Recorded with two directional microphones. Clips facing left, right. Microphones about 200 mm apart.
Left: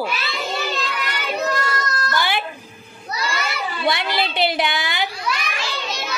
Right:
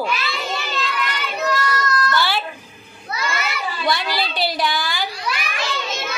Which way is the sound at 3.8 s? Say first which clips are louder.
Left 1 dB; 25° left (ahead or behind).